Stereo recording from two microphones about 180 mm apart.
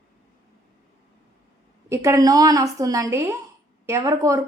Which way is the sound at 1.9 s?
15° right (ahead or behind).